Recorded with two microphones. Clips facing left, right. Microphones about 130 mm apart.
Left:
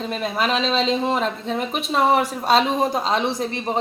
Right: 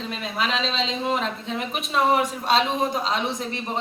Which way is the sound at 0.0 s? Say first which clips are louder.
Left 4 dB; 45° left (ahead or behind).